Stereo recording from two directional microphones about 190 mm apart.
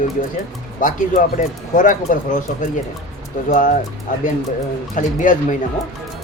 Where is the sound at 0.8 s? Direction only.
45° left (ahead or behind).